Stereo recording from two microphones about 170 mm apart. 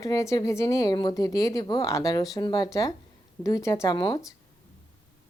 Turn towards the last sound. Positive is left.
turn(degrees=25)  # may be behind; listen again after turning